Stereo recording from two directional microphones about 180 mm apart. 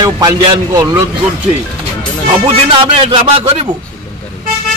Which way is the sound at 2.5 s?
30° right (ahead or behind).